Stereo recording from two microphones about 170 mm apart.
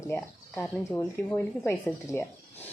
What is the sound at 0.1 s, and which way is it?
A woman's voice, 15° left (ahead or behind).